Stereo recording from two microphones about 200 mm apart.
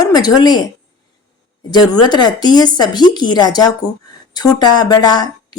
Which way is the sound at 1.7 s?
20° left (ahead or behind).